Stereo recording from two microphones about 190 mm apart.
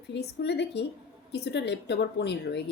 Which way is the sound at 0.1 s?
60° left (ahead or behind).